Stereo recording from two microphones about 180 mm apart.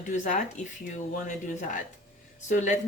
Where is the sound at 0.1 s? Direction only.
45° left (ahead or behind).